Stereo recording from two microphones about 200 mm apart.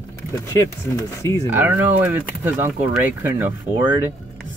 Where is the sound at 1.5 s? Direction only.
10° right (ahead or behind).